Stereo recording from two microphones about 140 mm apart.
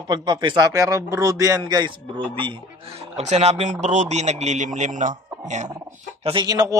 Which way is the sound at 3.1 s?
50° right (ahead or behind).